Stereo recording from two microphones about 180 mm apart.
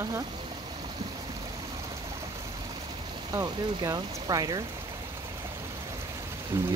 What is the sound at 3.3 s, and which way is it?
Speech, 20° right (ahead or behind).